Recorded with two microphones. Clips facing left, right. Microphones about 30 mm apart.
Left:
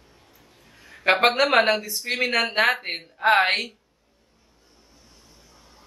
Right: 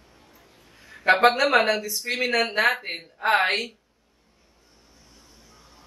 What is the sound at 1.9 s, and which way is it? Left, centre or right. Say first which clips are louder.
Speech: left 1 dB; centre.